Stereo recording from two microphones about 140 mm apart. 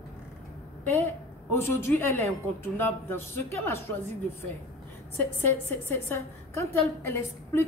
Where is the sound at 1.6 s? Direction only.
15° left (ahead or behind).